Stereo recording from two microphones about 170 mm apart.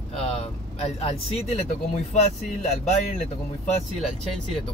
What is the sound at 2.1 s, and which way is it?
Speech, 40° left (ahead or behind).